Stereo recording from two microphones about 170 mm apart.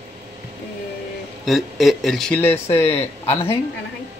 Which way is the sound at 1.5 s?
Centre (ahead or behind).